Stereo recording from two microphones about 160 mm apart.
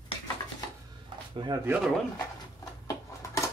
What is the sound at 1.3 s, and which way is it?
Speech, 30° right (ahead or behind).